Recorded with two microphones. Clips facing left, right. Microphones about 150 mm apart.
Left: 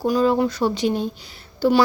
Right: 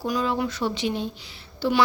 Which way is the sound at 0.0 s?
40° left (ahead or behind).